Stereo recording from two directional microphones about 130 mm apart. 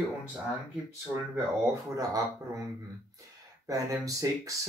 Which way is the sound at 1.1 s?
15° right (ahead or behind).